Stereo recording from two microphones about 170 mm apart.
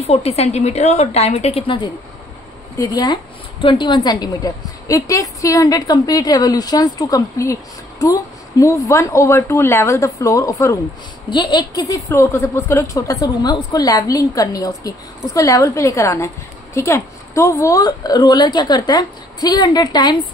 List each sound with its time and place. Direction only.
0.0 s a woman's voice: 40° left (ahead or behind)